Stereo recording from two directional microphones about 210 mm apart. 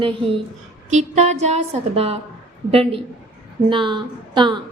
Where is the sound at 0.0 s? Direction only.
25° right (ahead or behind).